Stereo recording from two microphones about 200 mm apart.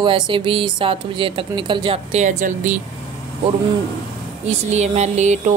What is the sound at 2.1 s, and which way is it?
Speech, 40° right (ahead or behind).